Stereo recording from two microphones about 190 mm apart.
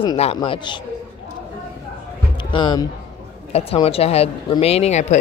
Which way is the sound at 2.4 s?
25° left (ahead or behind).